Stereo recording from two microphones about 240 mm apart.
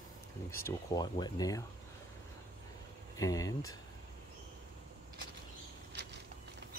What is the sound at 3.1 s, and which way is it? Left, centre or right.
Speech, centre.